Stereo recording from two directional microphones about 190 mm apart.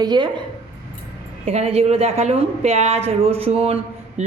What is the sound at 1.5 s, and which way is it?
Speech, 30° right (ahead or behind).